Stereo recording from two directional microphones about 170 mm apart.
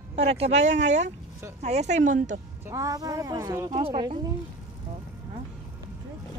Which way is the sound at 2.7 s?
20° right (ahead or behind).